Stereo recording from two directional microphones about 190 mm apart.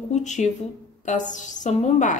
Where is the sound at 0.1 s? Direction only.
40° left (ahead or behind).